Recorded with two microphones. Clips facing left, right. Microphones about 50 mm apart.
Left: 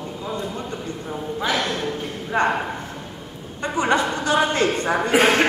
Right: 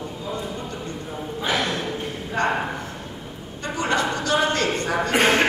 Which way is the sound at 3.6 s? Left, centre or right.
Left.